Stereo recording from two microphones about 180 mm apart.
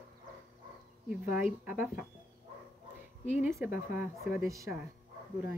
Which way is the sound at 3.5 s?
5° right (ahead or behind).